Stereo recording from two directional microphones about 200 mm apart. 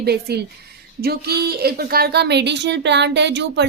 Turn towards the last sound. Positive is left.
turn(degrees=-60)  # may be behind; listen again after turning